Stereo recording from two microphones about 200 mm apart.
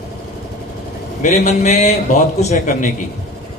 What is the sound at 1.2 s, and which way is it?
A man's voice, 35° left (ahead or behind).